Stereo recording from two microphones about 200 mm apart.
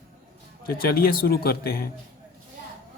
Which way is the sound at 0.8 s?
50° left (ahead or behind).